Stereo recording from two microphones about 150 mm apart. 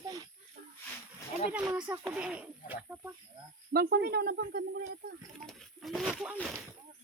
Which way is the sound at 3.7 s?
90° right.